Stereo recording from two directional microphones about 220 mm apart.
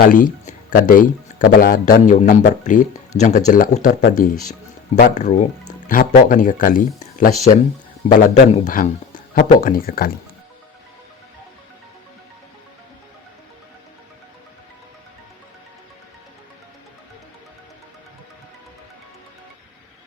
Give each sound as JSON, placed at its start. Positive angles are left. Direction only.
{"t": 0.1, "sound": "speech", "side_deg": 35}